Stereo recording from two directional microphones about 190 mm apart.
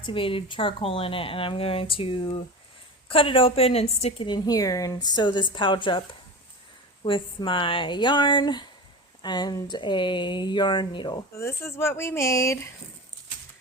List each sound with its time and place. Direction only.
0.0 s speech: 30° left (ahead or behind)
7.0 s speech: 25° left (ahead or behind)